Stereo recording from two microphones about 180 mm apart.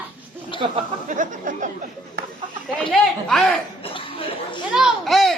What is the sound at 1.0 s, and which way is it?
Speech, 45° right (ahead or behind).